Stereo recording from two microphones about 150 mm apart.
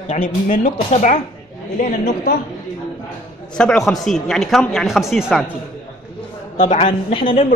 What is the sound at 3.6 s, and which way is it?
Speech, centre (ahead or behind).